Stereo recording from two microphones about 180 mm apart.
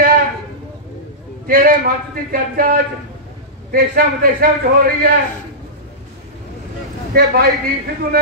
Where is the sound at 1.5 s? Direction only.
50° right (ahead or behind).